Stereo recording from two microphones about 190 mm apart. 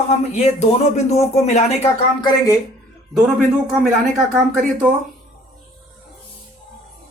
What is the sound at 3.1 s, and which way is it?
Speech, 5° right (ahead or behind).